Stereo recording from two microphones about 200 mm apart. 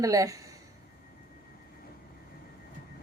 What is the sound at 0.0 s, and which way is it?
Speech, 15° right (ahead or behind).